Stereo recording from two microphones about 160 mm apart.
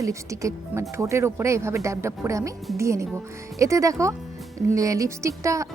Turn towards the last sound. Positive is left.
turn(degrees=-20)  # may be behind; listen again after turning